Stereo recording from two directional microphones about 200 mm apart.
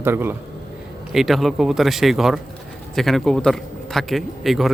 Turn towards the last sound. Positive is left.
turn(degrees=0)  # may be behind; listen again after turning